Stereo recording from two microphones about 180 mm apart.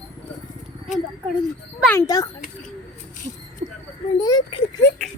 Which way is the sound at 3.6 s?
40° right (ahead or behind).